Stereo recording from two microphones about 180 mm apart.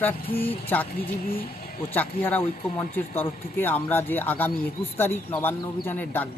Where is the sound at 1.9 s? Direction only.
10° left (ahead or behind).